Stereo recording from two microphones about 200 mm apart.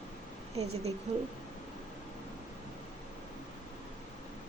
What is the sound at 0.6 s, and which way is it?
Speech, 30° right (ahead or behind).